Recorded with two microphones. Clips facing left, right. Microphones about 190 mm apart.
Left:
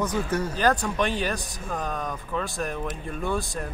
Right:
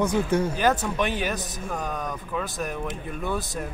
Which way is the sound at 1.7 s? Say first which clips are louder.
Left 1 dB; centre (ahead or behind).